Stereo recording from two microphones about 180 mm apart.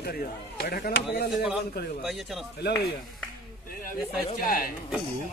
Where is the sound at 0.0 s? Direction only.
60° left (ahead or behind).